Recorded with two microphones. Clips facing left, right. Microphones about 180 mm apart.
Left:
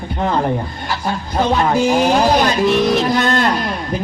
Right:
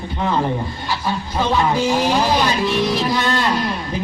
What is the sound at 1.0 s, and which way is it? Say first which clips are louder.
A man's voice: left 4 dB; 50° left (ahead or behind).